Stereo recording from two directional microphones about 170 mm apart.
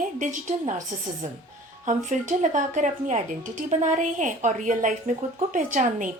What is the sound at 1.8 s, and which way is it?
Speech, 45° right (ahead or behind).